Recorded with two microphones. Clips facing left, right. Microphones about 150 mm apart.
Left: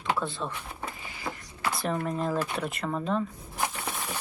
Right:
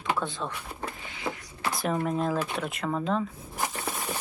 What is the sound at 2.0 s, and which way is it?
Speech, 5° right (ahead or behind).